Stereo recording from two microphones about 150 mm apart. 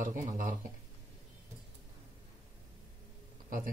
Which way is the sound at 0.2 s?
65° right (ahead or behind).